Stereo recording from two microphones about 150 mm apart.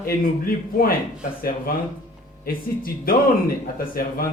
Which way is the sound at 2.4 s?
75° left (ahead or behind).